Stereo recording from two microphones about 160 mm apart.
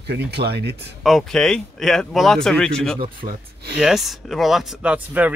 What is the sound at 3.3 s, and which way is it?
Speech, 90° right.